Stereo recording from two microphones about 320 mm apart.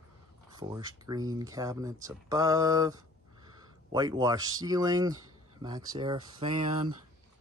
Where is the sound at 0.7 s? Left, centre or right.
Centre.